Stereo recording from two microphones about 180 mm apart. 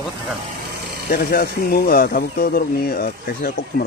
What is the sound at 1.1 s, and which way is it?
Speech, 60° left (ahead or behind).